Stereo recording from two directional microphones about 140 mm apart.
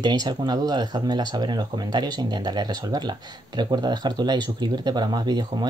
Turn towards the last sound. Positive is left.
turn(degrees=-30)  # may be behind; listen again after turning